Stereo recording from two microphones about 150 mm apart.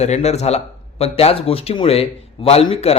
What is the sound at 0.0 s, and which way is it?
A man's voice, 45° left (ahead or behind).